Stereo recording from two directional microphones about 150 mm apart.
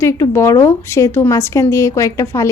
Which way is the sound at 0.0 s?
20° left (ahead or behind).